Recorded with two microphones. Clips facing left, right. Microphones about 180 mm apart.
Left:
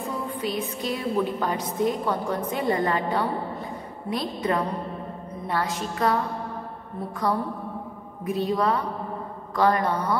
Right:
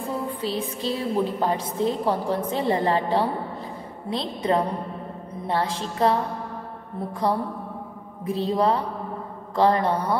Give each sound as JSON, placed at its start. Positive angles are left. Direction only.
{"t": 0.4, "sound": "a woman's voice", "side_deg": -30}
{"t": 8.3, "sound": "a woman's voice", "side_deg": -30}